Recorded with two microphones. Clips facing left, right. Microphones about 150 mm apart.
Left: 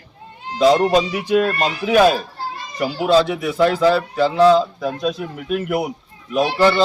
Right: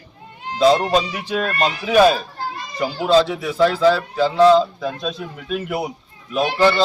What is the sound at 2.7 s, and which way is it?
Speech, 15° left (ahead or behind).